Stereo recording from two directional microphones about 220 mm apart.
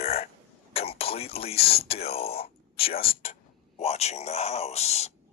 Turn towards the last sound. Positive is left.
turn(degrees=30)  # may be behind; listen again after turning